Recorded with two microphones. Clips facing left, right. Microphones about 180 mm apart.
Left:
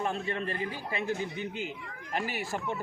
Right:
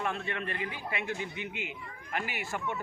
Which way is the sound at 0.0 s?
35° left (ahead or behind).